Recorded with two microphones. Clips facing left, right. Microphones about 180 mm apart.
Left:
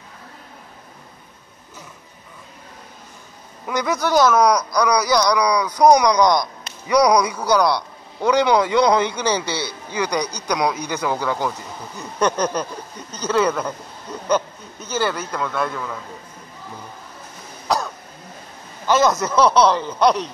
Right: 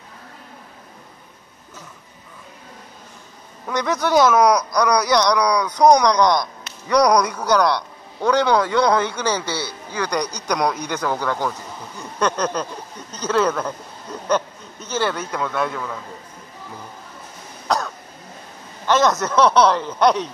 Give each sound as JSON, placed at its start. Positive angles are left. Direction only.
{"t": 3.6, "sound": "speech", "side_deg": 5}
{"t": 13.2, "sound": "speech", "side_deg": 0}
{"t": 14.1, "sound": "a sound", "side_deg": 0}
{"t": 14.9, "sound": "speech", "side_deg": 0}
{"t": 17.6, "sound": "cough", "side_deg": 5}
{"t": 18.9, "sound": "speech", "side_deg": 5}